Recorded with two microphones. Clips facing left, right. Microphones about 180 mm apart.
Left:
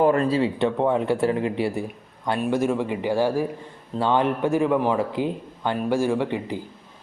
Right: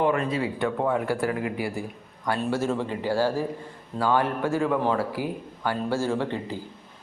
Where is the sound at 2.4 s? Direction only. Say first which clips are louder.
Left 4 dB; 15° left (ahead or behind).